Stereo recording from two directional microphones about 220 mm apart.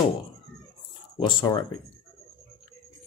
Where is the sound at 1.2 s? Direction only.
20° left (ahead or behind).